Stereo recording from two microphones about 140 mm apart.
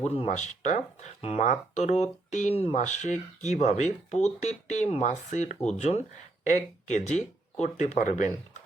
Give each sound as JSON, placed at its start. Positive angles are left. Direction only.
{"t": 0.0, "sound": "speech", "side_deg": 50}